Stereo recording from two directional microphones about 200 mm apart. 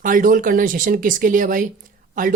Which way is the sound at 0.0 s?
45° right (ahead or behind).